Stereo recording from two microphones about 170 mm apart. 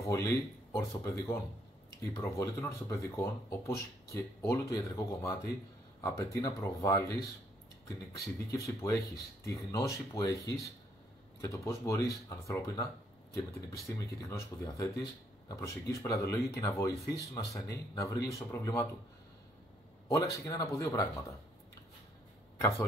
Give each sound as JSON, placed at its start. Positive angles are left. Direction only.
{"t": 0.0, "sound": "speech", "side_deg": 20}
{"t": 8.5, "sound": "speech", "side_deg": 20}
{"t": 20.1, "sound": "speech", "side_deg": 20}
{"t": 22.6, "sound": "speech", "side_deg": 15}